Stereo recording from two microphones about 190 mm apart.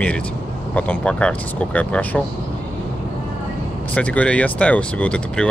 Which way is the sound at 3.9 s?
5° left (ahead or behind).